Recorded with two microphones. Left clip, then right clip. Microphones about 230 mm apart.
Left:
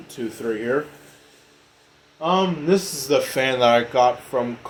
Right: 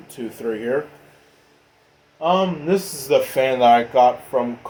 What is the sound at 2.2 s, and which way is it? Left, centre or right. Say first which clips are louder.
Speech: right 2 dB; left.